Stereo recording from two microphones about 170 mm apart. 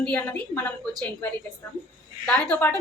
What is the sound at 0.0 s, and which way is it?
Speech, 10° left (ahead or behind).